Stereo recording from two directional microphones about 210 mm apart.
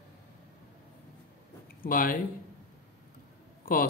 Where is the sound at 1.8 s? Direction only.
40° left (ahead or behind).